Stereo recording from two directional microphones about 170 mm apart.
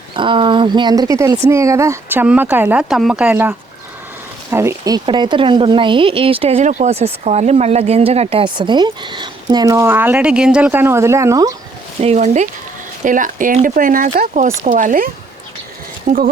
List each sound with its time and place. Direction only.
0.1 s speech: 30° right (ahead or behind); by 3.5 s 10° right (ahead or behind)
4.5 s speech: 15° right (ahead or behind)
5.0 s speech: 25° right (ahead or behind)
11.9 s speech: 40° right (ahead or behind); by 16.3 s 55° right (ahead or behind)